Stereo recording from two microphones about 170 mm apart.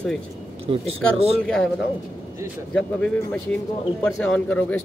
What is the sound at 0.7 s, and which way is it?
Speech, 30° right (ahead or behind).